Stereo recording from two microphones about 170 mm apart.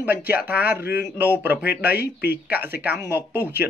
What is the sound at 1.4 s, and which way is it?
Speech, 10° right (ahead or behind).